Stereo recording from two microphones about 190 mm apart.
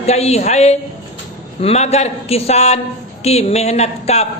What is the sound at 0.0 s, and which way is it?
A man's voice, 35° left (ahead or behind).